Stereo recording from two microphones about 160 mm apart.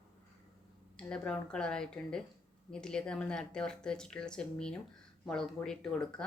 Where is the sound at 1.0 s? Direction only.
5° left (ahead or behind).